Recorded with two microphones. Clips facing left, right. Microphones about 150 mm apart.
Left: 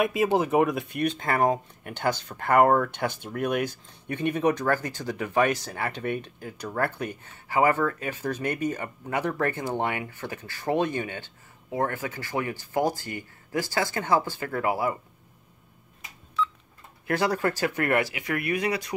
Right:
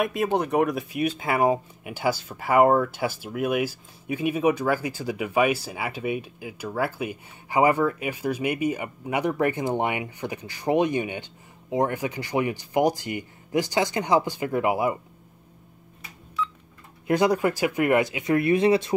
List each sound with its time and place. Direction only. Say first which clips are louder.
0.0 s speech: left 1 dB; centre (ahead or behind); by 15.0 s 15° right (ahead or behind)
17.1 s speech: right 4 dB; 15° right (ahead or behind)